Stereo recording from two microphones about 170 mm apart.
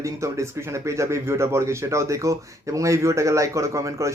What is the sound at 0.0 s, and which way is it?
Speech, 15° right (ahead or behind).